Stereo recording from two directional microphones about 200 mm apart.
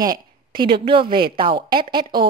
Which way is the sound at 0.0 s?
20° right (ahead or behind).